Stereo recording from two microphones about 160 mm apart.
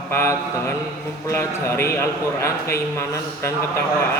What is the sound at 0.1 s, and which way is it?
A man's voice, 15° left (ahead or behind).